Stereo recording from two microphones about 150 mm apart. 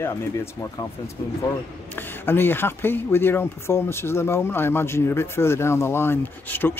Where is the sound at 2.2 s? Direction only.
15° left (ahead or behind).